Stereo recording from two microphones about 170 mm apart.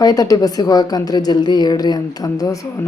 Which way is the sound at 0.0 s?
20° left (ahead or behind).